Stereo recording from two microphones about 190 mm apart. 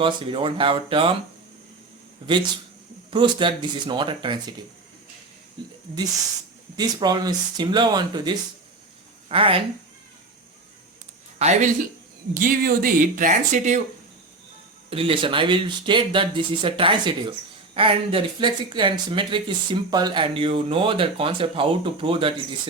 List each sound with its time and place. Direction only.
0.0 s speech: 25° right (ahead or behind)
3.1 s speech: 25° right (ahead or behind)
5.6 s speech: 25° right (ahead or behind)
6.7 s speech: 20° right (ahead or behind)
11.3 s speech: 35° right (ahead or behind)
14.8 s speech: 30° right (ahead or behind)